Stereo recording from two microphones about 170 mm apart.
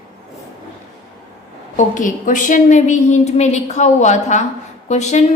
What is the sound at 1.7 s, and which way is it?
A woman's voice, 50° left (ahead or behind).